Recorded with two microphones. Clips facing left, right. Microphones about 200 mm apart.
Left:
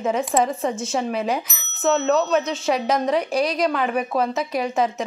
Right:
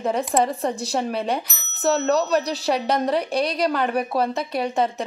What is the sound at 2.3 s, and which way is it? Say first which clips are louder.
A woman's voice: left 1 dB; 35° right (ahead or behind).